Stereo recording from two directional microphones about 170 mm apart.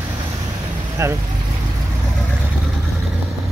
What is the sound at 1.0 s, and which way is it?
Vehicle, 15° right (ahead or behind).